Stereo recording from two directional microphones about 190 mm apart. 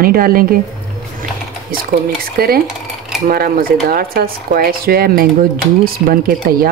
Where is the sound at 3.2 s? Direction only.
50° right (ahead or behind).